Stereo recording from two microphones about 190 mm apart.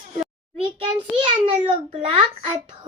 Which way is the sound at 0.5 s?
25° right (ahead or behind).